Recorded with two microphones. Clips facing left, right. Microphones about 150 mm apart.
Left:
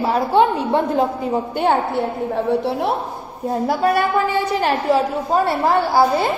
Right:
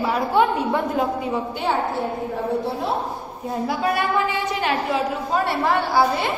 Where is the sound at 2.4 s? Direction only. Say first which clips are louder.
Left 4 dB; 70° left (ahead or behind).